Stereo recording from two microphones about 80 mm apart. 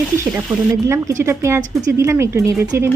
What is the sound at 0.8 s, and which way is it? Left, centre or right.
Speech, right.